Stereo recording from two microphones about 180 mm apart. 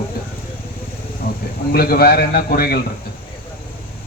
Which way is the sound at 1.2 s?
55° left (ahead or behind).